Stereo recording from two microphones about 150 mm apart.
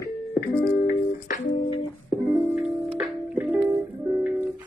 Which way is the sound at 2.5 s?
5° right (ahead or behind).